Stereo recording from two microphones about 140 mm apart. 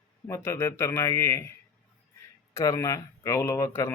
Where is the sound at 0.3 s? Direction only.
20° left (ahead or behind).